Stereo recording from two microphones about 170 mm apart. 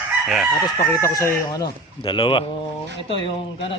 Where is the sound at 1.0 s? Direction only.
15° left (ahead or behind).